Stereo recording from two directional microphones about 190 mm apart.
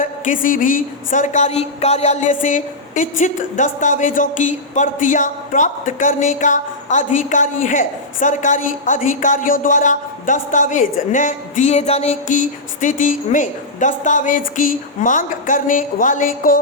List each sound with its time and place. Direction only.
0.0 s a woman's voice: 45° left (ahead or behind)